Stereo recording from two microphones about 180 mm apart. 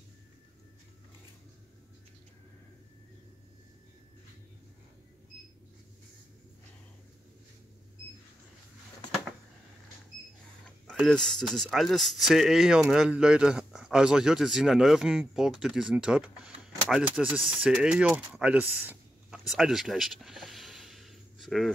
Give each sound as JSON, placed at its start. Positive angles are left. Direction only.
{"t": 10.9, "sound": "speech", "side_deg": 5}